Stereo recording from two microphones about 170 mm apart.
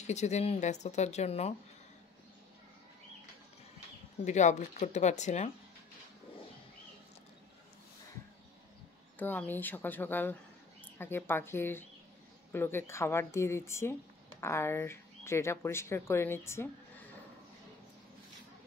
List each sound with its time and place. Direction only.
0.0 s speech: 40° left (ahead or behind)
4.2 s speech: 45° left (ahead or behind)
9.2 s speech: 10° left (ahead or behind)